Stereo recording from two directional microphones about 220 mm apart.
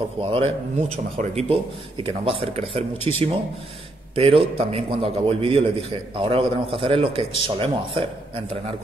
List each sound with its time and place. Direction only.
0.2 s a man's voice: 25° right (ahead or behind)